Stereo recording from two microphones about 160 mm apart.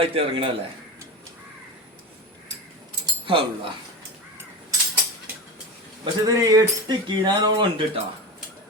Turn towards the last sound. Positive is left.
turn(degrees=-30)  # may be behind; listen again after turning